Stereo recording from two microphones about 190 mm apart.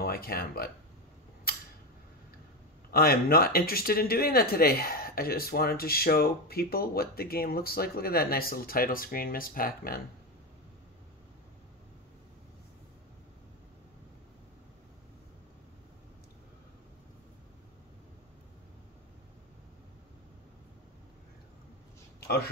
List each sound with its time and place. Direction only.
0.0 s speech: 55° left (ahead or behind)
2.9 s speech: 50° left (ahead or behind)